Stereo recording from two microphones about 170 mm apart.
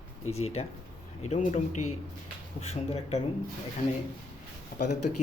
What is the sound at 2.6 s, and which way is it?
Speech, 40° left (ahead or behind).